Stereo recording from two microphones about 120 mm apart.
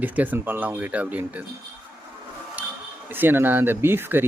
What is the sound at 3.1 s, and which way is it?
Speech, 15° right (ahead or behind).